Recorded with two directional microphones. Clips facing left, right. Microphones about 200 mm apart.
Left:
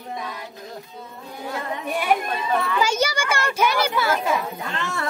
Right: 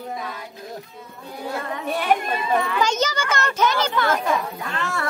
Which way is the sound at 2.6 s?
5° left (ahead or behind).